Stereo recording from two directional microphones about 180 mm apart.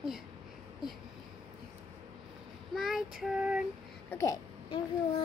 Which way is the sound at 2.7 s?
Centre (ahead or behind).